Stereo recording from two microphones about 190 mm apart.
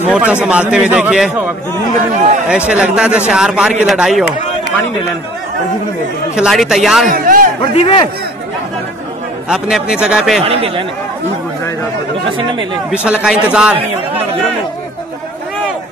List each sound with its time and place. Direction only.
0.1 s a man's voice: 5° right (ahead or behind)
2.7 s a man's voice: 5° right (ahead or behind)
6.3 s a man's voice: 5° right (ahead or behind)
7.1 s a man's voice: 45° right (ahead or behind)
7.6 s a man's voice: 25° left (ahead or behind)
9.5 s a man's voice: centre (ahead or behind)
10.4 s speech: 30° right (ahead or behind)
12.9 s a man's voice: 5° right (ahead or behind)